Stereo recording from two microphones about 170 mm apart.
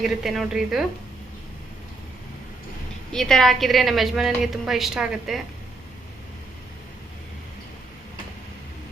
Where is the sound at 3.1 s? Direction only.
5° left (ahead or behind).